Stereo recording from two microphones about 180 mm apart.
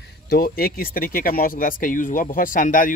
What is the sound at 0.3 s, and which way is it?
Speech, 55° left (ahead or behind).